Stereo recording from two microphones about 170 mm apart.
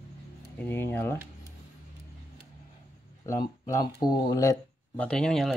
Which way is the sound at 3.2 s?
20° left (ahead or behind).